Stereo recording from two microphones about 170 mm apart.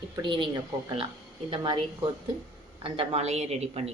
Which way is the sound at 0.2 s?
30° right (ahead or behind).